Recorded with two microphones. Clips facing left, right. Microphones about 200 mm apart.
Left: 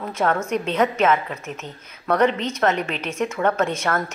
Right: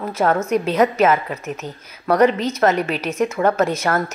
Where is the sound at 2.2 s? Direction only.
35° right (ahead or behind).